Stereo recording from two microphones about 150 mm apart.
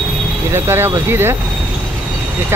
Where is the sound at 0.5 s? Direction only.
15° right (ahead or behind).